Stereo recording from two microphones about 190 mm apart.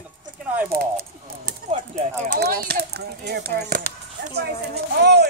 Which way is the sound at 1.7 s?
35° right (ahead or behind).